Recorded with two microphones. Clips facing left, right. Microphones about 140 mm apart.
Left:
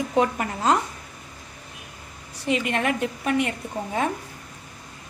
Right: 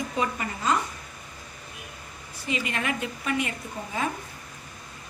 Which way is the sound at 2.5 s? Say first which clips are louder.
Left 6 dB; 60° left (ahead or behind).